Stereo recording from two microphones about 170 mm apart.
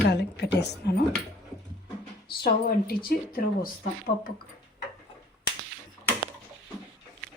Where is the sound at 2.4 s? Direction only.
65° left (ahead or behind).